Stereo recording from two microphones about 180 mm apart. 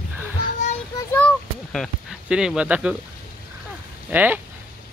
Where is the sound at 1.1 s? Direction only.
5° left (ahead or behind).